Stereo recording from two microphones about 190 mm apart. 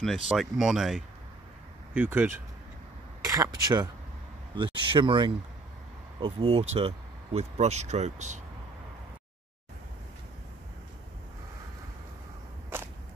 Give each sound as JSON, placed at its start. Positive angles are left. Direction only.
{"t": 0.0, "sound": "speech", "side_deg": 0}
{"t": 3.3, "sound": "a sound", "side_deg": -15}
{"t": 4.6, "sound": "speech", "side_deg": -25}